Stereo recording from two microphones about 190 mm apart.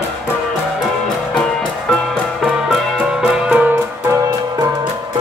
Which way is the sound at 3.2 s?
5° right (ahead or behind).